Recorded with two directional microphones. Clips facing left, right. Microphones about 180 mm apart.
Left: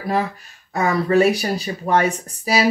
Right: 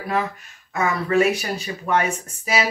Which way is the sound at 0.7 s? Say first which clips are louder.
Left 3 dB; 35° left (ahead or behind).